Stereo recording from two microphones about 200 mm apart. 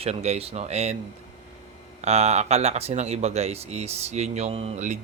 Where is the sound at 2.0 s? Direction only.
35° right (ahead or behind).